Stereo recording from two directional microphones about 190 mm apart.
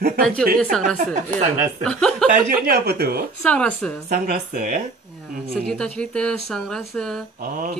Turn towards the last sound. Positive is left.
turn(degrees=-50)  # may be behind; listen again after turning